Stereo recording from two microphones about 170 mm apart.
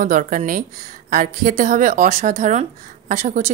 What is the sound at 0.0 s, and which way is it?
Speech, 50° right (ahead or behind).